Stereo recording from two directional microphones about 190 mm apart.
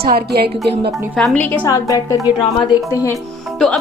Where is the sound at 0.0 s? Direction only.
55° right (ahead or behind).